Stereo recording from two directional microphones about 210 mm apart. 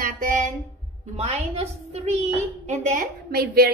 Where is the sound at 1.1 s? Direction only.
30° right (ahead or behind).